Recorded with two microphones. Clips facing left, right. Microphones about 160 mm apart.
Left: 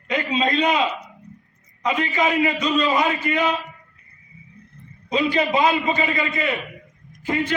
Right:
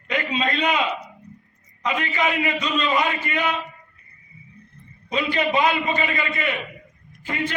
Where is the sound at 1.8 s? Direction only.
10° left (ahead or behind).